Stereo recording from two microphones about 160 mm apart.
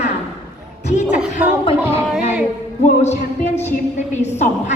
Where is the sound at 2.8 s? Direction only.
45° left (ahead or behind).